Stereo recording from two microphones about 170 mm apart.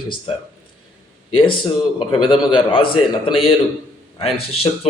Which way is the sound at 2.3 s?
30° left (ahead or behind).